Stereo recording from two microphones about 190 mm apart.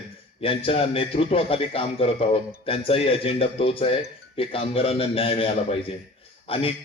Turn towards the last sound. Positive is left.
turn(degrees=30)  # may be behind; listen again after turning